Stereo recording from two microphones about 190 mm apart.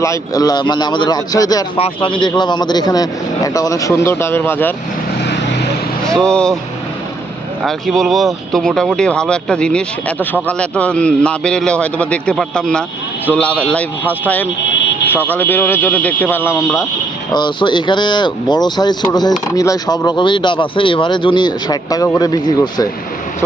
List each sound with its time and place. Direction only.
0.0 s a man's voice: 15° left (ahead or behind)
6.1 s speech: 5° left (ahead or behind)
7.6 s speech: centre (ahead or behind)
15.1 s a man's voice: 10° left (ahead or behind)